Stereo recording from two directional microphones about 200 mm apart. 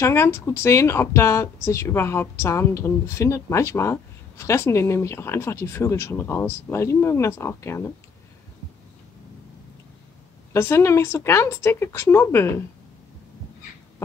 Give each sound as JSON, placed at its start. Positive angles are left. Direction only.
{"t": 0.0, "sound": "speech", "side_deg": 15}
{"t": 10.5, "sound": "speech", "side_deg": 15}